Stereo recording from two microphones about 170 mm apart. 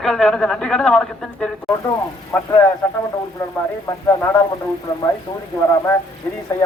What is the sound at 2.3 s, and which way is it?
Speech, 15° left (ahead or behind).